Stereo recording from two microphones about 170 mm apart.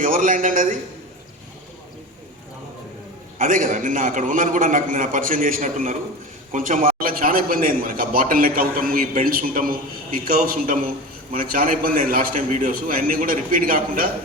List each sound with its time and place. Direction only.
0.0 s a man's voice: 55° right (ahead or behind)
3.3 s a man's voice: 50° right (ahead or behind)